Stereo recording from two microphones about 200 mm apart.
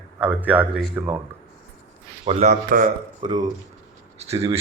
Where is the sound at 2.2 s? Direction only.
35° right (ahead or behind).